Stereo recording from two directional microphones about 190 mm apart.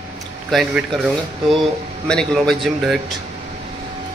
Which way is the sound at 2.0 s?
5° left (ahead or behind).